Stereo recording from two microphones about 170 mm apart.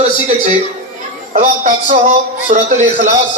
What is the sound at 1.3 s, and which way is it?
A man's voice, 50° right (ahead or behind).